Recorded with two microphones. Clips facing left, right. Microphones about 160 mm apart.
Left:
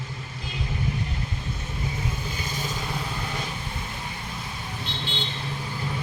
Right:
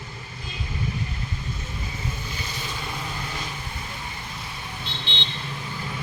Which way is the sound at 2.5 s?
45° left (ahead or behind).